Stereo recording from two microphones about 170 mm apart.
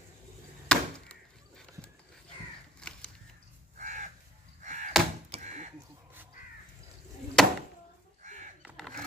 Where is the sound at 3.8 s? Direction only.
45° right (ahead or behind).